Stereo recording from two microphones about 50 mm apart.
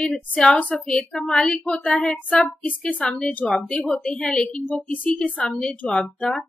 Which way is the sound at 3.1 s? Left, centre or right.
Centre.